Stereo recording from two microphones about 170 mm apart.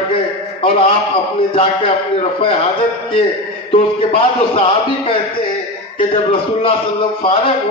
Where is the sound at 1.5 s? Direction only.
35° left (ahead or behind).